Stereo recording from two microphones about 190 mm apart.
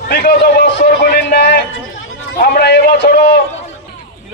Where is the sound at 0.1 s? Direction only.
55° left (ahead or behind).